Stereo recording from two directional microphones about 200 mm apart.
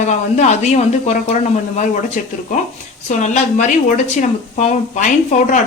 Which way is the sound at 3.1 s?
35° left (ahead or behind).